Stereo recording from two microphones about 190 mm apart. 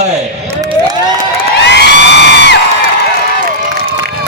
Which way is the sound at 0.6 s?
20° right (ahead or behind).